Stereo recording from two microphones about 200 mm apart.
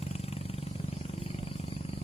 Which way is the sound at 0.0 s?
30° left (ahead or behind).